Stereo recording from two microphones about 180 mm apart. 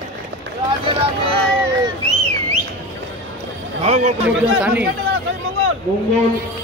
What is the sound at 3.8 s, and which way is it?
Speech, 40° right (ahead or behind).